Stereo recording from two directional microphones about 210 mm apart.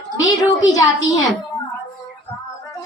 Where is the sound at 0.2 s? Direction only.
15° left (ahead or behind).